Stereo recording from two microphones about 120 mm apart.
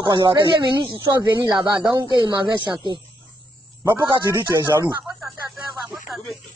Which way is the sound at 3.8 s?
35° right (ahead or behind).